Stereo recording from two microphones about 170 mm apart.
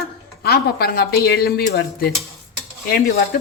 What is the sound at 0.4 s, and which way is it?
Speech, 70° left (ahead or behind).